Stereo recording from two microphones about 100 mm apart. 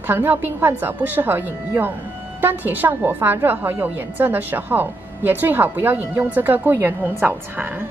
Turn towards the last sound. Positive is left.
turn(degrees=-20)  # may be behind; listen again after turning